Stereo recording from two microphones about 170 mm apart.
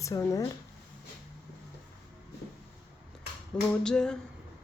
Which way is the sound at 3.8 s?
5° left (ahead or behind).